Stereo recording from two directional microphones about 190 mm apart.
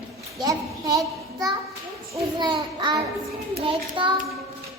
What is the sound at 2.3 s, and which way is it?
Child singing, 25° right (ahead or behind).